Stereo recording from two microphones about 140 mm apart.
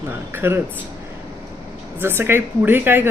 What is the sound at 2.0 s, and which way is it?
Speech, 15° right (ahead or behind).